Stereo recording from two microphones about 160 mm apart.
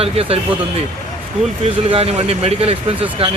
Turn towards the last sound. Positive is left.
turn(degrees=-35)  # may be behind; listen again after turning